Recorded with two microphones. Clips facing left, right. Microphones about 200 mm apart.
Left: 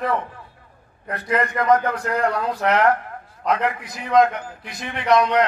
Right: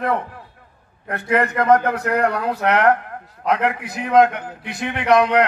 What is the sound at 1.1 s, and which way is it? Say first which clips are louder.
A man's voice: right 3 dB; 65° right (ahead or behind).